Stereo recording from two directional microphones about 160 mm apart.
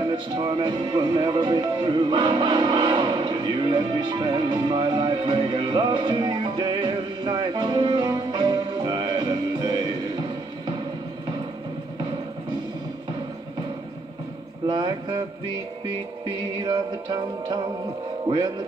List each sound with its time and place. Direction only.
0.0 s music: 30° right (ahead or behind)
14.7 s speech: 30° right (ahead or behind)
16.3 s music: 30° right (ahead or behind)
18.2 s speech: 30° right (ahead or behind)